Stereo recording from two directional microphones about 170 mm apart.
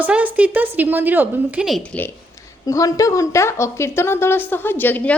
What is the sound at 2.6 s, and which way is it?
A woman's voice, 20° left (ahead or behind).